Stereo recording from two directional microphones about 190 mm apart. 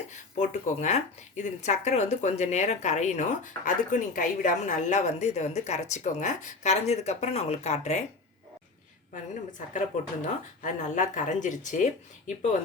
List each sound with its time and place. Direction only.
0.3 s speech: 35° left (ahead or behind)
9.3 s speech: 40° left (ahead or behind)